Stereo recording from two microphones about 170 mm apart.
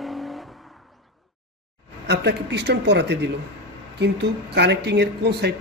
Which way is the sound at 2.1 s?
80° right.